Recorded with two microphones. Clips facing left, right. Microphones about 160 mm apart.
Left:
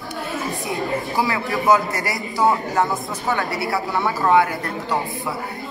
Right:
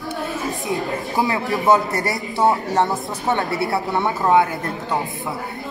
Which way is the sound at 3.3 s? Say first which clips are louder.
Right 2 dB; 20° right (ahead or behind).